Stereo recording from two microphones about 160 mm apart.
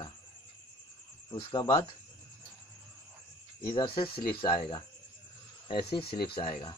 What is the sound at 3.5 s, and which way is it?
Speech, 30° left (ahead or behind).